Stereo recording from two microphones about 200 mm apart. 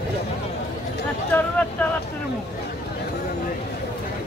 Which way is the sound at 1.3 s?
5° left (ahead or behind).